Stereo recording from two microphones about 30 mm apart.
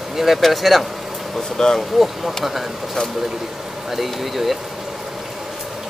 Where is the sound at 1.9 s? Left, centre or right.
Centre.